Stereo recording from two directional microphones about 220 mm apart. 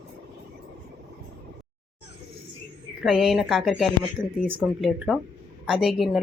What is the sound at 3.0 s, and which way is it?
A woman's voice, centre (ahead or behind).